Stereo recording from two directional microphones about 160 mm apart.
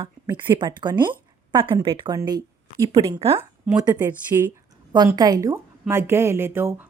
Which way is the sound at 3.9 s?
10° right (ahead or behind).